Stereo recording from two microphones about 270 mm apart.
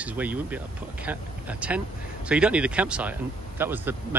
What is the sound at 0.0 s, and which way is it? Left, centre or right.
Speech, centre.